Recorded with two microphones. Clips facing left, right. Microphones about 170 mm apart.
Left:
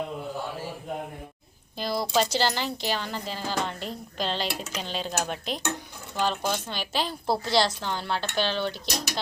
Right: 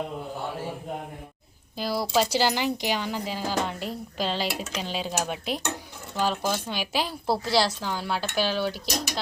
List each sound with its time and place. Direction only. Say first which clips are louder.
1.7 s a woman's voice: right 1 dB; 5° right (ahead or behind)